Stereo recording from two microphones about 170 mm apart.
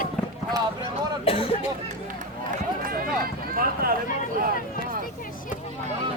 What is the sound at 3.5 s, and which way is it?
Speech, 60° right (ahead or behind).